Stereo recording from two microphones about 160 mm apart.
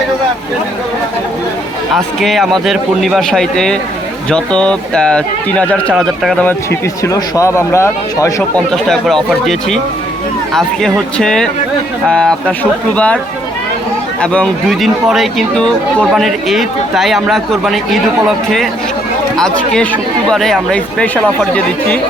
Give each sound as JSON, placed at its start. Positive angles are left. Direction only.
{"t": 2.0, "sound": "speech", "side_deg": 0}
{"t": 8.7, "sound": "speech", "side_deg": 0}
{"t": 14.2, "sound": "speech", "side_deg": 5}